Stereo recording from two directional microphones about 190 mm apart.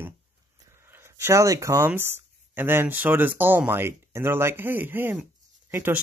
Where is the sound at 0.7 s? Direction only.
10° right (ahead or behind).